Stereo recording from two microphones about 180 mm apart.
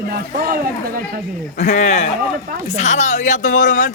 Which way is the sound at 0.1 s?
55° right (ahead or behind).